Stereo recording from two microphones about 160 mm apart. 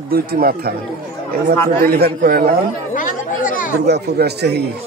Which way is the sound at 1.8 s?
70° right (ahead or behind).